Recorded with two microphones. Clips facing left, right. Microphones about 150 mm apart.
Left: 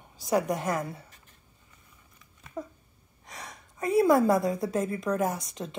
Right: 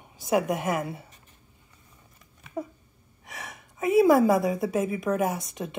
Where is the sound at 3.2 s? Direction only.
5° right (ahead or behind).